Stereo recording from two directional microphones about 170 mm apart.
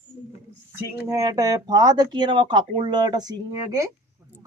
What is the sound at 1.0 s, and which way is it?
Speech, 20° right (ahead or behind).